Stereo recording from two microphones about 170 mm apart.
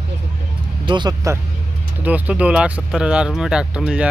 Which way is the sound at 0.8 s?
25° right (ahead or behind).